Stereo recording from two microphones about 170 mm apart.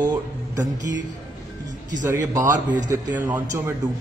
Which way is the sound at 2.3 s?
20° right (ahead or behind).